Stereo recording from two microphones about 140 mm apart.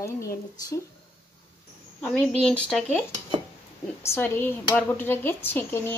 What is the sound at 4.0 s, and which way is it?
Speech, 20° left (ahead or behind).